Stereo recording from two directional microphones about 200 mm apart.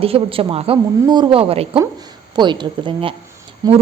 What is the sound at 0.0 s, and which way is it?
A woman's voice, 30° right (ahead or behind).